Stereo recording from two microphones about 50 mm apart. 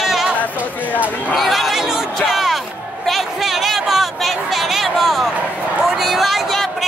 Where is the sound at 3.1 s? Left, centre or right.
Centre.